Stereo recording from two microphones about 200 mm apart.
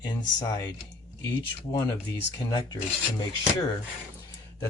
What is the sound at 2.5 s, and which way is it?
Speech, 20° left (ahead or behind).